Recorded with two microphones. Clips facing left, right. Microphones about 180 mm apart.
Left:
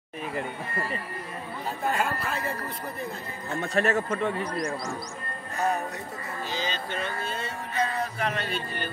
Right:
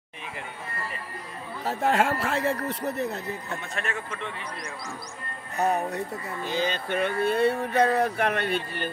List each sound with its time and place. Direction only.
1.7 s speech: 80° right
3.6 s speech: 40° left (ahead or behind)
6.4 s a sound: 55° right (ahead or behind)